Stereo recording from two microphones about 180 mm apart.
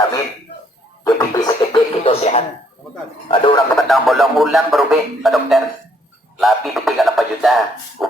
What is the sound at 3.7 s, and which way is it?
Speech, centre (ahead or behind).